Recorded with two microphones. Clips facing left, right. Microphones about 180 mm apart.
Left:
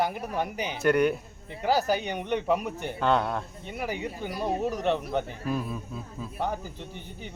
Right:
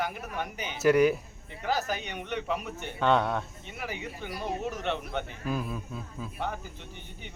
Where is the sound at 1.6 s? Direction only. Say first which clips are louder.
Left 6 dB; 35° left (ahead or behind).